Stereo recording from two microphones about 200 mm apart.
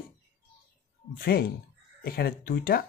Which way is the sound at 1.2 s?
50° left (ahead or behind).